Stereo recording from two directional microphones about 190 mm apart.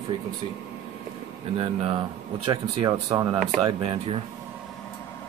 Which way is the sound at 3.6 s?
30° right (ahead or behind).